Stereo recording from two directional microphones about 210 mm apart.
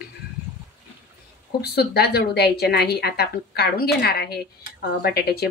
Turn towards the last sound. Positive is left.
turn(degrees=50)  # may be behind; listen again after turning